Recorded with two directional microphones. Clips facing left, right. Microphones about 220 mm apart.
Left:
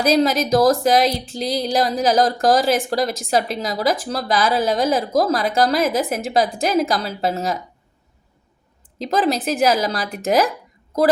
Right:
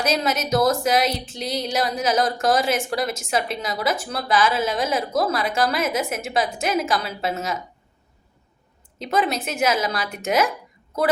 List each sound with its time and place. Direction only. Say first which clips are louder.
0.0 s a woman's voice: left 6 dB; 35° left (ahead or behind)
9.0 s a woman's voice: left 3 dB; 35° left (ahead or behind)